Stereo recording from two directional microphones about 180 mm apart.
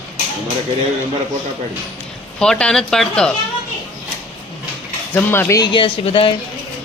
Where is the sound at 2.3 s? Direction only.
5° left (ahead or behind).